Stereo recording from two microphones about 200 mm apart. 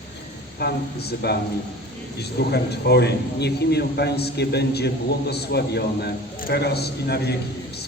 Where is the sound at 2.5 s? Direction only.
55° left (ahead or behind).